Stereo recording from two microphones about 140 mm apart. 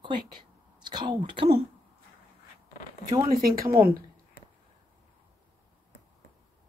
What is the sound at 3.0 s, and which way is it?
Speech, 25° right (ahead or behind).